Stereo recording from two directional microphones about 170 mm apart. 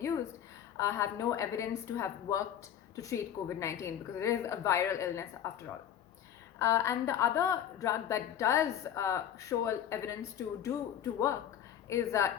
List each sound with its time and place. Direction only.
0.8 s a woman's voice: 15° left (ahead or behind)
6.6 s a woman's voice: 15° left (ahead or behind)